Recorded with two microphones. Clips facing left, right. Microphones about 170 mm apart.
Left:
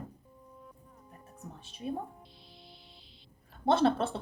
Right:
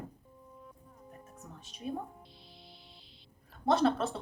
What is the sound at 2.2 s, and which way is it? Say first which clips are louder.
Music: even; centre (ahead or behind).